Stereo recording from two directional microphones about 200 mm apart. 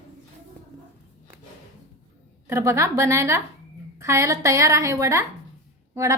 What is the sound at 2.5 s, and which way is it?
A woman's voice, 15° right (ahead or behind).